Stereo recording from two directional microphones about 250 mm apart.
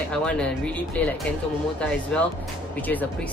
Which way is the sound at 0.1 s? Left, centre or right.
Centre.